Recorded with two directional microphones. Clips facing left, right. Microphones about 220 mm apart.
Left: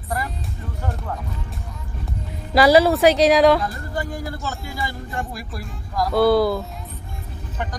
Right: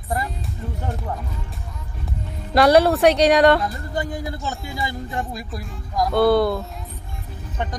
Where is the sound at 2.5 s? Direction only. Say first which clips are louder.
Even; centre (ahead or behind).